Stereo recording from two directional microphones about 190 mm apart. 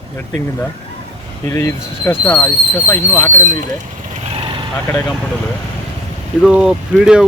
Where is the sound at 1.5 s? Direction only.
15° left (ahead or behind).